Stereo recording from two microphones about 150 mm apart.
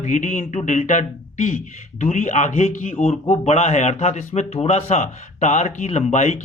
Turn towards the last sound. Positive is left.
turn(degrees=50)  # may be behind; listen again after turning